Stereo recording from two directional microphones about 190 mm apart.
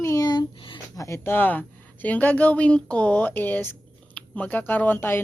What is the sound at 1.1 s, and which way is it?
Speech, 10° left (ahead or behind).